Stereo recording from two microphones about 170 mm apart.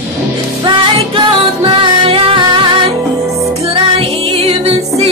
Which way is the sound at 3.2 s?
20° right (ahead or behind).